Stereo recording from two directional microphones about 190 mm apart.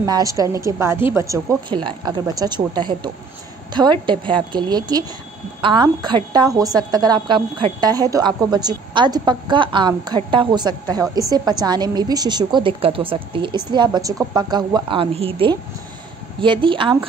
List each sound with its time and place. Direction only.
0.0 s a woman's voice: 20° right (ahead or behind)